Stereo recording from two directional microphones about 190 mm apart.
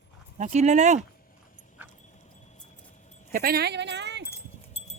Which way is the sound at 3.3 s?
50° right (ahead or behind).